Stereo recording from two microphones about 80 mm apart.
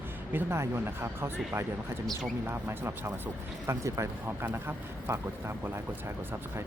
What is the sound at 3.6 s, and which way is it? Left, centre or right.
Speech, right.